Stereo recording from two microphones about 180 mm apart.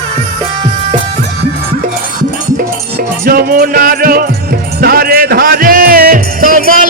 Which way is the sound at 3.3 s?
55° right (ahead or behind).